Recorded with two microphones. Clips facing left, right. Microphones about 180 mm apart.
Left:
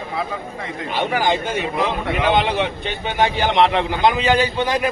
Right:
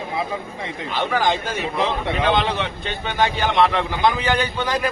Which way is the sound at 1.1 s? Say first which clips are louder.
Left 1 dB; 15° left (ahead or behind).